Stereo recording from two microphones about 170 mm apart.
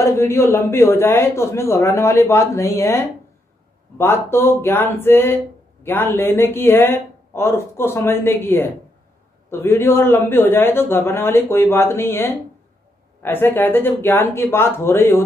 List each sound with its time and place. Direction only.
0.0 s a man's voice: 15° left (ahead or behind)